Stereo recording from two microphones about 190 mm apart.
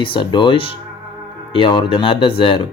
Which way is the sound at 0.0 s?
25° left (ahead or behind).